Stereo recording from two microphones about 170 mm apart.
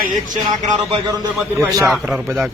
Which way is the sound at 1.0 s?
20° right (ahead or behind).